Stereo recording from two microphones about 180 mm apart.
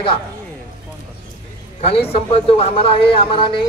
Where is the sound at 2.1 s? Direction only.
30° left (ahead or behind).